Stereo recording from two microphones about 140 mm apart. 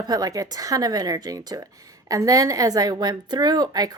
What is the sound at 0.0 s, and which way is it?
A woman's voice, 25° right (ahead or behind).